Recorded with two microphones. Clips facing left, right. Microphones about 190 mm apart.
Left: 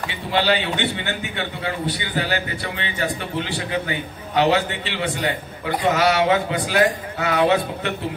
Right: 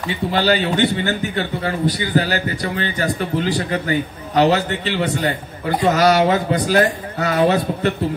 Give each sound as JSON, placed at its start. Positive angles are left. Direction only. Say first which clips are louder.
{"t": 0.3, "sound": "a man's voice", "louder": "right 2 dB", "side_deg": -40}